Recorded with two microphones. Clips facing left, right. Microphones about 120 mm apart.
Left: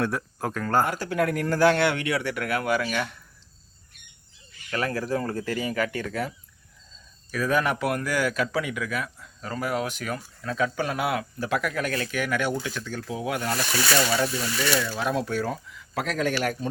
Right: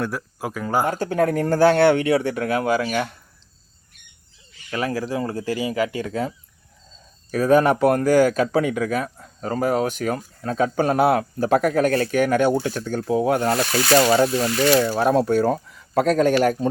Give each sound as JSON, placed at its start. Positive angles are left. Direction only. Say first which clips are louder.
{"t": 0.0, "sound": "speech", "louder": "right 1 dB", "side_deg": 0}
{"t": 1.1, "sound": "speech", "louder": "right 5 dB", "side_deg": -30}
{"t": 4.7, "sound": "speech", "louder": "right 2 dB", "side_deg": -15}
{"t": 7.3, "sound": "speech", "louder": "right 8 dB", "side_deg": -35}